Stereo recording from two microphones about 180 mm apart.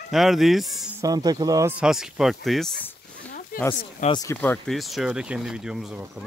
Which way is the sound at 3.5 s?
50° left (ahead or behind).